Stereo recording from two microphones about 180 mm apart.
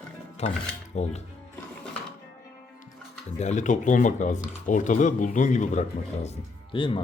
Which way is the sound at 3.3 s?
40° left (ahead or behind).